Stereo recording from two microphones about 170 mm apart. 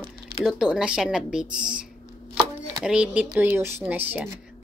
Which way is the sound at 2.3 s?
5° right (ahead or behind).